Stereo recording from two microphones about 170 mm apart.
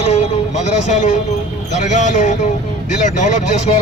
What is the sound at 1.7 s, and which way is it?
Speech, 45° left (ahead or behind).